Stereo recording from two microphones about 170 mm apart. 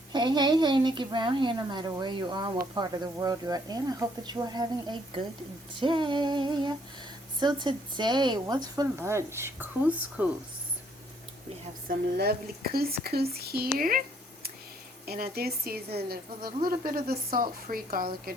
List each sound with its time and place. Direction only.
0.1 s a woman's voice: 25° right (ahead or behind); by 10.2 s 10° right (ahead or behind)
11.9 s speech: 65° right (ahead or behind)
15.0 s speech: 65° right (ahead or behind)